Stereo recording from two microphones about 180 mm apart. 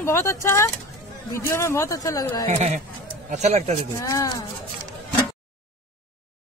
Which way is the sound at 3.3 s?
40° right (ahead or behind).